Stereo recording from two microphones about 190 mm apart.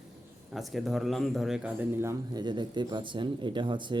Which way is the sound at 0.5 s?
Centre (ahead or behind).